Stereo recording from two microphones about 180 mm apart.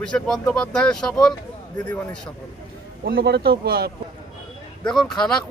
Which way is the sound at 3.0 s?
60° right (ahead or behind).